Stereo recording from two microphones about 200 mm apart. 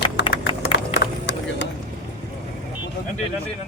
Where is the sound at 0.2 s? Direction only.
60° left (ahead or behind).